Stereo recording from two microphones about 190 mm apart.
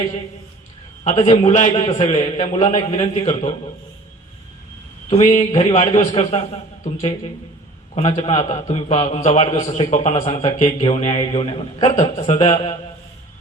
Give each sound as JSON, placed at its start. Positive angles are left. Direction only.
{"t": 1.0, "sound": "a man's voice", "side_deg": 35}
{"t": 5.0, "sound": "a man's voice", "side_deg": 35}